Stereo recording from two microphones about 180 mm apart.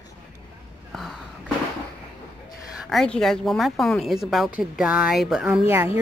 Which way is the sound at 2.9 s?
Centre (ahead or behind).